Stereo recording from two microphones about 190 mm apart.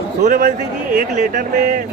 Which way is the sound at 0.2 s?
40° right (ahead or behind).